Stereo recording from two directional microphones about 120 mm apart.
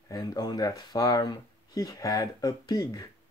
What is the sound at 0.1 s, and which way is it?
Speech, 30° left (ahead or behind).